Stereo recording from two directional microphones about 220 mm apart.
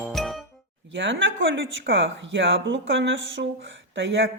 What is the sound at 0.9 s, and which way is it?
Speech, 55° right (ahead or behind).